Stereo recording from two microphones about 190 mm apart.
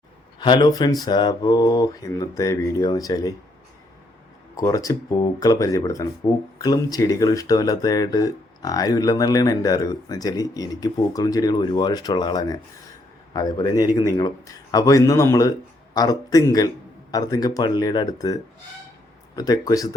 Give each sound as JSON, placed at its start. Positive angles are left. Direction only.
{"t": 0.3, "sound": "speech", "side_deg": 25}
{"t": 4.5, "sound": "speech", "side_deg": 20}
{"t": 19.4, "sound": "speech", "side_deg": 20}